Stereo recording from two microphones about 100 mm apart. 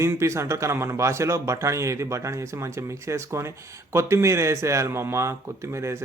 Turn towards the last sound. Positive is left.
turn(degrees=-30)  # may be behind; listen again after turning